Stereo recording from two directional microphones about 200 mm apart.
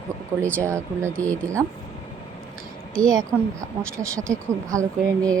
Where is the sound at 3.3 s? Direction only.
15° right (ahead or behind).